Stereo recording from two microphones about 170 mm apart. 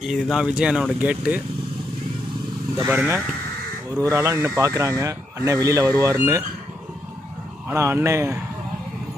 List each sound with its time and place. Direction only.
0.0 s speech: centre (ahead or behind)
2.8 s speech: 10° right (ahead or behind)
7.7 s speech: 15° right (ahead or behind)